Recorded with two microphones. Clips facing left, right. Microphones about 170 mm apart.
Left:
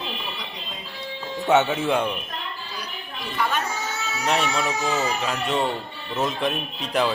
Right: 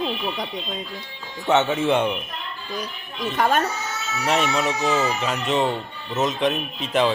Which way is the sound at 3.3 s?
45° right (ahead or behind).